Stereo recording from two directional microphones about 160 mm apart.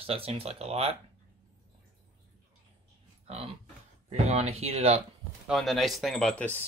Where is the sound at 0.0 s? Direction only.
35° right (ahead or behind).